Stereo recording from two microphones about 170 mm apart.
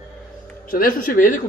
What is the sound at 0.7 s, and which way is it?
Speech, 55° left (ahead or behind).